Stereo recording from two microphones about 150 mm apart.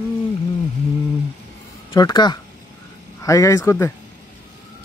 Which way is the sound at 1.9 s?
25° left (ahead or behind).